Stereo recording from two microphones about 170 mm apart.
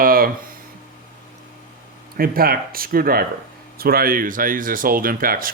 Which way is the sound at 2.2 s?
60° right (ahead or behind).